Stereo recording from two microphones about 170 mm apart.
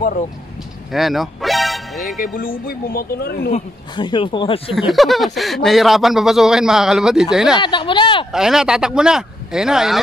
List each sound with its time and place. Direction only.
0.9 s speech: centre (ahead or behind)
2.1 s speech: 55° left (ahead or behind)
3.9 s speech: 25° left (ahead or behind)
4.9 s speech: centre (ahead or behind)
7.5 s speech: 30° left (ahead or behind)
8.3 s speech: 5° right (ahead or behind)